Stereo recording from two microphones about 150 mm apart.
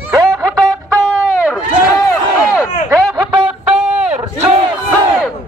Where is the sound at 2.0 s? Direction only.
20° left (ahead or behind).